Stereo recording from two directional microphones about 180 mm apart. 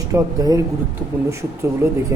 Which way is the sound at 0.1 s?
20° right (ahead or behind).